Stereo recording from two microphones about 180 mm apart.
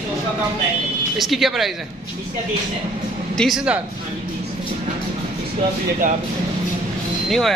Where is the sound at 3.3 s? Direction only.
Centre (ahead or behind).